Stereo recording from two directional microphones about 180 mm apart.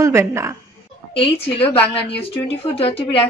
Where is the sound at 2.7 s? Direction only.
30° left (ahead or behind).